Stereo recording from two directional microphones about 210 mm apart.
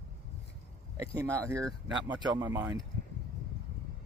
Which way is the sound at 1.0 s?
15° right (ahead or behind).